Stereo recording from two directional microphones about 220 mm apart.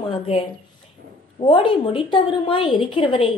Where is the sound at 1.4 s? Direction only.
25° left (ahead or behind).